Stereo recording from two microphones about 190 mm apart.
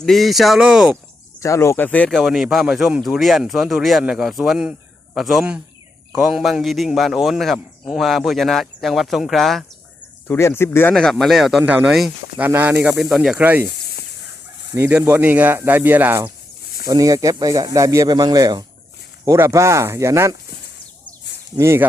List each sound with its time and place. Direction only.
0.0 s speech: centre (ahead or behind)
1.4 s speech: 15° left (ahead or behind)
10.2 s speech: 10° left (ahead or behind); by 13.7 s 10° right (ahead or behind)
14.7 s speech: 10° right (ahead or behind)
21.5 s speech: 15° right (ahead or behind)